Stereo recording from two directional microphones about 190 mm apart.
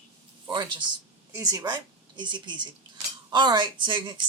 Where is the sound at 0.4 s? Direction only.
25° right (ahead or behind).